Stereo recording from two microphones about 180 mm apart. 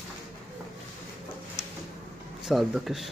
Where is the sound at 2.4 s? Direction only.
Centre (ahead or behind).